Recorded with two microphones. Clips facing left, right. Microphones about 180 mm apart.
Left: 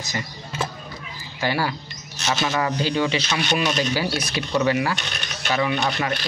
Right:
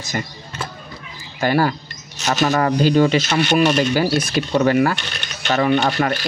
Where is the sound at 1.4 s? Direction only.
50° right (ahead or behind).